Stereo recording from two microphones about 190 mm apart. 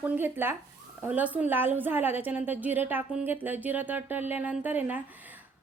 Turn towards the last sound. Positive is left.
turn(degrees=-10)  # may be behind; listen again after turning